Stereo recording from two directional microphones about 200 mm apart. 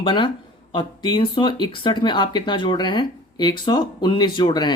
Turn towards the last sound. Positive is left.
turn(degrees=20)  # may be behind; listen again after turning